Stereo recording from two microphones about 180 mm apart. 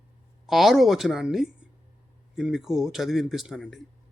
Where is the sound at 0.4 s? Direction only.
Centre (ahead or behind).